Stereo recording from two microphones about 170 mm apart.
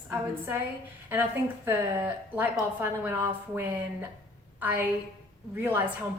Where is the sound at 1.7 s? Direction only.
15° right (ahead or behind).